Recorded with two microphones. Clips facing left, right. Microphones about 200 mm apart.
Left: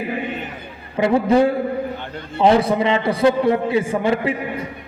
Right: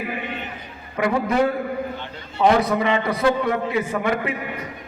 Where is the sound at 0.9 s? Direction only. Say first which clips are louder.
Left 5 dB; 30° left (ahead or behind).